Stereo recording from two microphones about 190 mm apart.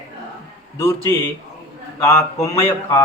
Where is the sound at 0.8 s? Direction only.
15° left (ahead or behind).